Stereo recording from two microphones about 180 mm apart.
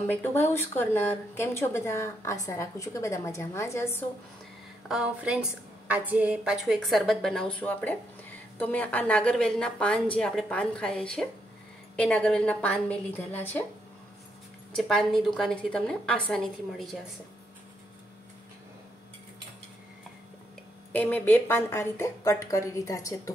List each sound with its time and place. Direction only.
0.0 s speech: 10° left (ahead or behind)
4.8 s a woman's voice: 5° right (ahead or behind); by 13.7 s 10° left (ahead or behind)
14.8 s a woman's voice: centre (ahead or behind)
20.9 s speech: 10° left (ahead or behind)